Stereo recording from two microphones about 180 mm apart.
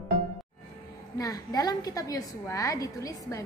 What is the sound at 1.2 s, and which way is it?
A woman's voice, 20° left (ahead or behind).